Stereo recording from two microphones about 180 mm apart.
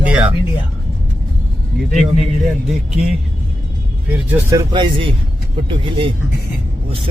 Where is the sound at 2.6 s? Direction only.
5° right (ahead or behind).